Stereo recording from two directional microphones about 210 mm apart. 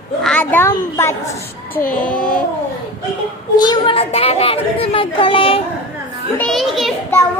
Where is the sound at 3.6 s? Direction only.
20° left (ahead or behind).